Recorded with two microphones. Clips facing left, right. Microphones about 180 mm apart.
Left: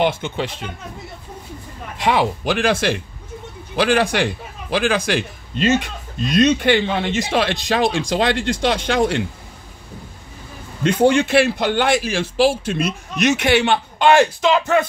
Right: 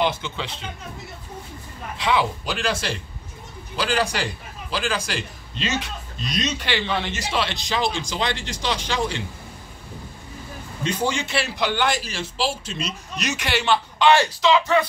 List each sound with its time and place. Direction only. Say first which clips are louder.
0.0 s speech: left 5 dB; 55° left (ahead or behind)
2.0 s a man's voice: left 4 dB; 55° left (ahead or behind)
10.8 s a man's voice: left 10 dB; 60° left (ahead or behind)